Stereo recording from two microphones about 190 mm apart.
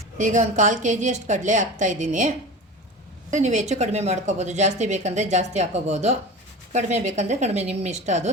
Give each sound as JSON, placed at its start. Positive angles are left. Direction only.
{"t": 0.2, "sound": "a woman's voice", "side_deg": -40}